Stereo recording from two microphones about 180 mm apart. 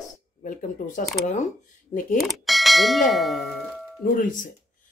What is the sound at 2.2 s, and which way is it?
Speech, centre (ahead or behind).